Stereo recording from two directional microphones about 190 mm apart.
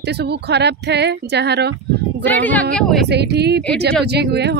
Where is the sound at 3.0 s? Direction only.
60° right (ahead or behind).